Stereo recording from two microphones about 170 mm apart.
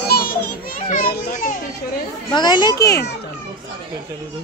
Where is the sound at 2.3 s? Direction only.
25° left (ahead or behind).